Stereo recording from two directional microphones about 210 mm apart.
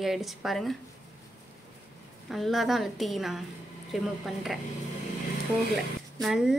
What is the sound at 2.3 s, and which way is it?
Speech, centre (ahead or behind).